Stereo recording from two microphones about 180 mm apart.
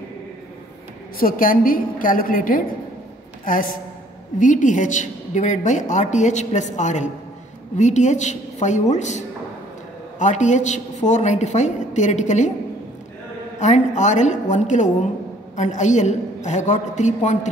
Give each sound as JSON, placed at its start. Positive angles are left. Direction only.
{"t": 1.2, "sound": "a woman's voice", "side_deg": 50}
{"t": 13.6, "sound": "a woman's voice", "side_deg": 40}